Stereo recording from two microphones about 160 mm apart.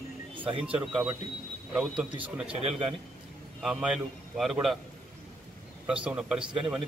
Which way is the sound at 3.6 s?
5° right (ahead or behind).